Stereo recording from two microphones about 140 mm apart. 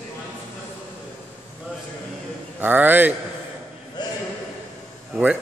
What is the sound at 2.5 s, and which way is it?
Speech, 15° right (ahead or behind).